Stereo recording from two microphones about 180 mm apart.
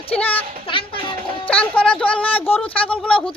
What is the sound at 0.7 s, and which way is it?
Speech, 30° left (ahead or behind).